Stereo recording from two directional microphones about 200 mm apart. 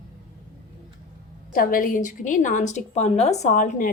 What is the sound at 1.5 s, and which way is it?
A woman's voice, 45° left (ahead or behind).